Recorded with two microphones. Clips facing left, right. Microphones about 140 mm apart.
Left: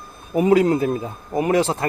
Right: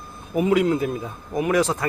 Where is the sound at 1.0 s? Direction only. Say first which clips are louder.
Left 2 dB; 30° left (ahead or behind).